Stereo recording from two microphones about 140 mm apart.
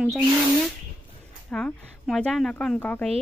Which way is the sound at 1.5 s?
5° left (ahead or behind).